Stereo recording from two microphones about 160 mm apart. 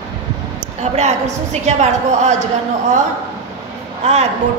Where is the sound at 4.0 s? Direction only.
45° right (ahead or behind).